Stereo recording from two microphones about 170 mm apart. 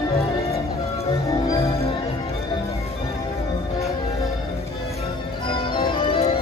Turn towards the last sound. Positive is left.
turn(degrees=30)  # may be behind; listen again after turning